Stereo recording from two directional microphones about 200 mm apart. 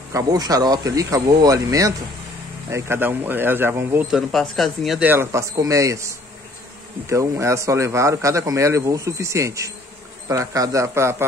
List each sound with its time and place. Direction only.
0.1 s a man's voice: 20° right (ahead or behind)
4.3 s a man's voice: centre (ahead or behind)